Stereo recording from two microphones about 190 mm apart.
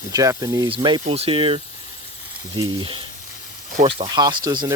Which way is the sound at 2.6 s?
25° right (ahead or behind).